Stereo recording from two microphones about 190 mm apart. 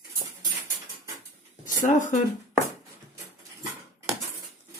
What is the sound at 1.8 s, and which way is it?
Speech, 40° left (ahead or behind).